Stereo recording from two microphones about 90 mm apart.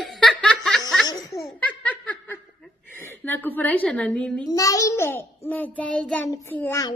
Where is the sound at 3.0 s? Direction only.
20° left (ahead or behind).